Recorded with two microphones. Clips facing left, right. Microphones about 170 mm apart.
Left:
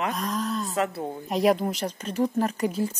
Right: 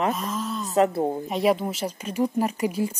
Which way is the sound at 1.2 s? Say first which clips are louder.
Left 5 dB; centre (ahead or behind).